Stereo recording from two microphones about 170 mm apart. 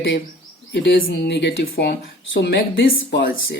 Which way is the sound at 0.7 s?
85° left.